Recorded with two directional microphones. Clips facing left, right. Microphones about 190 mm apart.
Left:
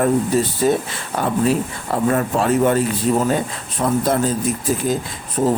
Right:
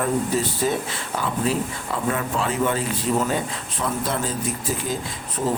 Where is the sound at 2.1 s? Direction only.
45° left (ahead or behind).